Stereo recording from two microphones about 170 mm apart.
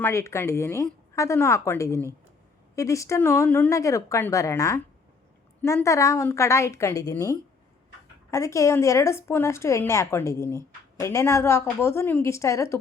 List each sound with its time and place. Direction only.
0.0 s speech: 15° left (ahead or behind)